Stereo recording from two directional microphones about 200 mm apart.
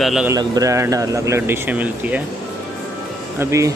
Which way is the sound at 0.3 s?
15° right (ahead or behind).